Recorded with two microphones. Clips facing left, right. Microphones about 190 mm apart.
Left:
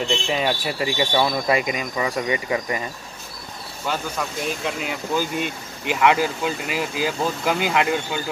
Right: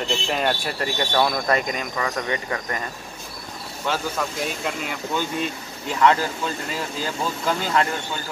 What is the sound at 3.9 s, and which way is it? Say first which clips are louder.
Speech: right 1 dB; 5° left (ahead or behind).